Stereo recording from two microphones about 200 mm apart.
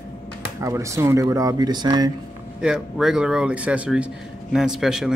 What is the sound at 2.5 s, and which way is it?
Speech, 5° right (ahead or behind).